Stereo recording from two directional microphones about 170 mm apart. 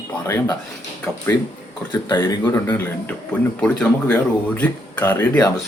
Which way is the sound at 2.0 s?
25° left (ahead or behind).